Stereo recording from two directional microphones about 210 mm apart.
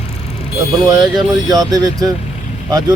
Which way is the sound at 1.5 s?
20° right (ahead or behind).